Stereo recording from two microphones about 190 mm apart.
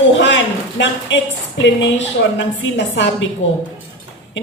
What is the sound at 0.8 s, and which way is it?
Speech, 70° left (ahead or behind).